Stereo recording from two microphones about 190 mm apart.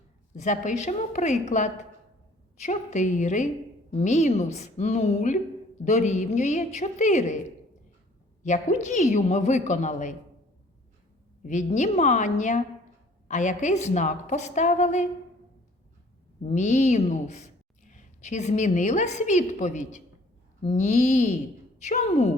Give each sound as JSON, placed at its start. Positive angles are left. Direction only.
{"t": 0.3, "sound": "a woman's voice", "side_deg": 40}
{"t": 8.4, "sound": "a woman's voice", "side_deg": 40}
{"t": 11.4, "sound": "a woman's voice", "side_deg": 40}
{"t": 16.4, "sound": "a woman's voice", "side_deg": 35}